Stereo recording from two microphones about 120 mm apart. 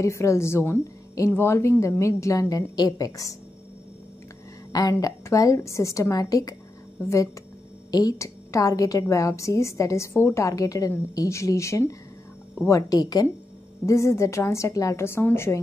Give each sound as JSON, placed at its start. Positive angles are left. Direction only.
{"t": 0.0, "sound": "a woman's voice", "side_deg": 25}
{"t": 4.7, "sound": "a woman's voice", "side_deg": 30}
{"t": 7.9, "sound": "a woman's voice", "side_deg": 30}